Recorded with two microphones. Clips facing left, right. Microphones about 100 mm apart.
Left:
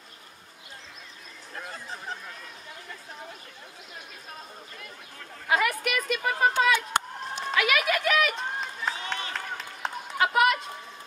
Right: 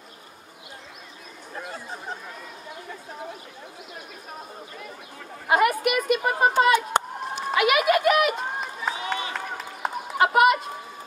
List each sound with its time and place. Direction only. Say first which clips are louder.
1.5 s chatter: right 3 dB; 10° right (ahead or behind)
5.7 s a sound: right 6 dB; 10° right (ahead or behind)
7.2 s crowd: right 4 dB; 5° right (ahead or behind)
7.9 s pigeon: right 6 dB; 50° right (ahead or behind)
8.3 s run: right 4 dB; 5° right (ahead or behind)
10.2 s chicken: right 4 dB; 5° right (ahead or behind)